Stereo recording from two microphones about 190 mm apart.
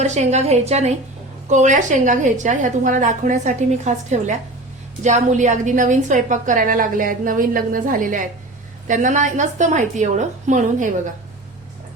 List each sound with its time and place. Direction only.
0.0 s a woman's voice: 35° right (ahead or behind)